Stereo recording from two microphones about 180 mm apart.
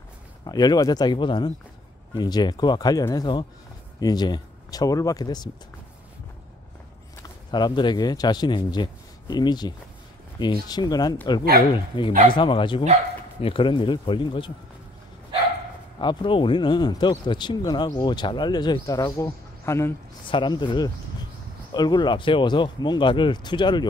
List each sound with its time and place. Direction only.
0.5 s speech: 20° left (ahead or behind)
7.2 s speech: 25° left (ahead or behind)
16.0 s speech: 25° left (ahead or behind)
20.2 s speech: 25° left (ahead or behind)